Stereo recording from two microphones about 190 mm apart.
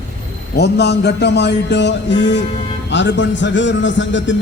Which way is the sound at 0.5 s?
60° left (ahead or behind).